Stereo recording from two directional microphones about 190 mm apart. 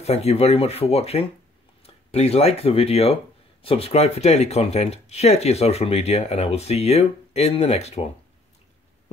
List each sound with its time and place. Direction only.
0.0 s speech: 35° left (ahead or behind)